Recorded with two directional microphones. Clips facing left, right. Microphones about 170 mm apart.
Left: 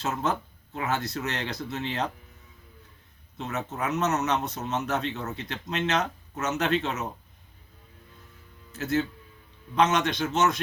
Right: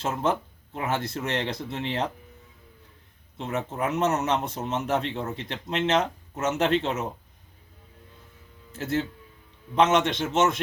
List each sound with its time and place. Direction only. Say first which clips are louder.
0.2 s a man's voice: right 3 dB; 30° right (ahead or behind)
3.4 s a man's voice: right 3 dB; 30° right (ahead or behind)
8.7 s a man's voice: left 1 dB; 30° right (ahead or behind)